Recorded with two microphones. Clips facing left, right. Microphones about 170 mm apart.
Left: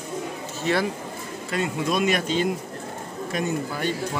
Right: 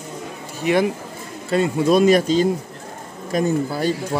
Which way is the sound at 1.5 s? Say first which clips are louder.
Right 8 dB; 30° right (ahead or behind).